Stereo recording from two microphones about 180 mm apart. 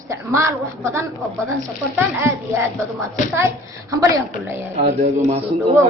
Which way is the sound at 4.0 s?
15° right (ahead or behind).